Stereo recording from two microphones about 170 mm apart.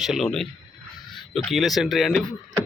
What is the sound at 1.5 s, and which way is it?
Speech, centre (ahead or behind).